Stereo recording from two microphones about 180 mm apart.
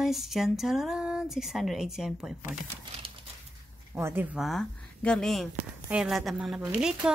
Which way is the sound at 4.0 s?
10° right (ahead or behind).